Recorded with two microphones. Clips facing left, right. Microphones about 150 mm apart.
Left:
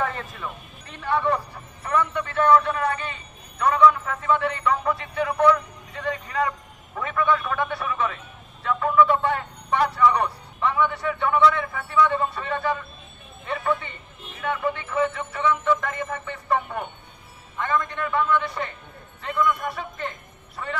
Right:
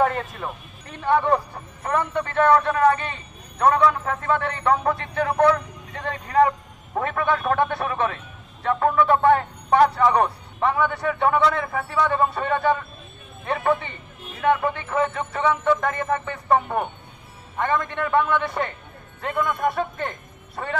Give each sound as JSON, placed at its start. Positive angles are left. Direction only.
{"t": 0.4, "sound": "a man's voice", "side_deg": -40}
{"t": 5.9, "sound": "vehicle", "side_deg": -50}
{"t": 7.0, "sound": "a man's voice", "side_deg": -50}
{"t": 14.4, "sound": "a man's voice", "side_deg": -55}